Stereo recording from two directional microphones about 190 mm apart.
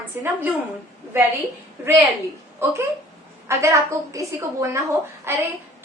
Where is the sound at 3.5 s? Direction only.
15° right (ahead or behind).